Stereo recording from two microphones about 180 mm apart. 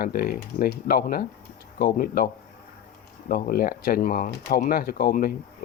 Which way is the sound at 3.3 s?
55° left (ahead or behind).